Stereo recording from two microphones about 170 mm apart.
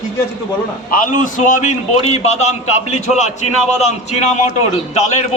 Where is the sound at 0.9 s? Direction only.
50° left (ahead or behind).